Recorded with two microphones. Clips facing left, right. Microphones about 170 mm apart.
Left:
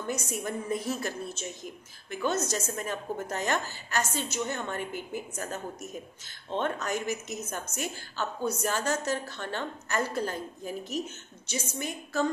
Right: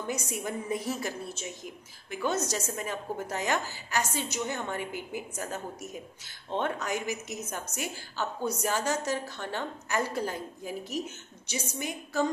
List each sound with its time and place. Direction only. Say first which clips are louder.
0.0 s a woman's voice: left 1 dB; 15° right (ahead or behind)